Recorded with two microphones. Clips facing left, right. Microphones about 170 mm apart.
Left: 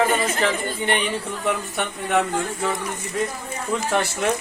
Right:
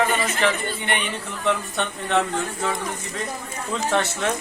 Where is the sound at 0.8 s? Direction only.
40° left (ahead or behind).